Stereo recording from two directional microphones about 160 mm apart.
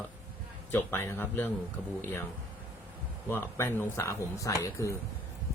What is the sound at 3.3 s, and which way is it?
Speech, 15° left (ahead or behind).